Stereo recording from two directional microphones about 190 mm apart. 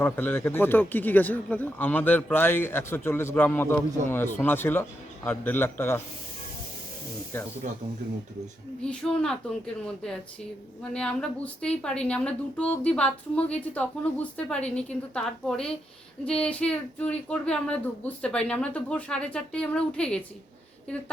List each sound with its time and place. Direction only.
0.0 s speech: 10° left (ahead or behind)
7.3 s speech: 10° left (ahead or behind)
8.8 s speech: 5° left (ahead or behind)